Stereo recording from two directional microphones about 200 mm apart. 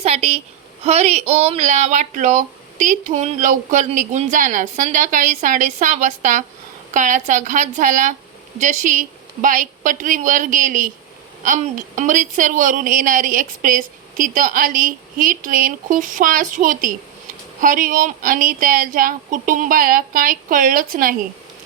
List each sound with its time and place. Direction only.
0.0 s a woman's voice: 30° right (ahead or behind)